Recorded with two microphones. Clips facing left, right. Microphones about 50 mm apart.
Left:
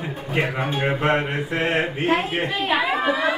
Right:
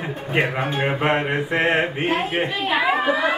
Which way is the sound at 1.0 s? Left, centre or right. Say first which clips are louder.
Right 1 dB; right.